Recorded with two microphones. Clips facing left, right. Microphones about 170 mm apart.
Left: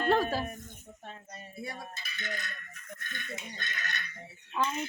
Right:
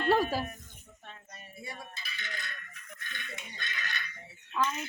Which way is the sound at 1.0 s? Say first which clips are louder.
Left 4 dB; 30° left (ahead or behind).